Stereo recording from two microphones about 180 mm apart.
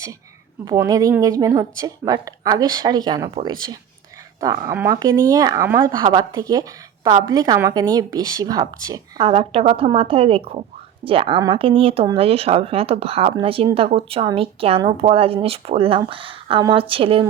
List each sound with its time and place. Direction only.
0.6 s a woman's voice: 20° right (ahead or behind)
9.2 s a woman's voice: 30° right (ahead or behind)